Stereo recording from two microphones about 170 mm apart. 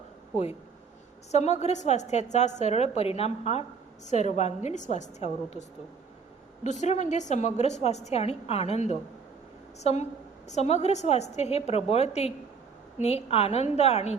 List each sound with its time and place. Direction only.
1.3 s a woman's voice: 40° left (ahead or behind)
6.7 s a woman's voice: 45° left (ahead or behind)